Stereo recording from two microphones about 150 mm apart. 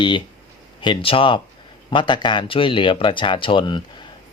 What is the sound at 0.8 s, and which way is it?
Speech, 35° left (ahead or behind).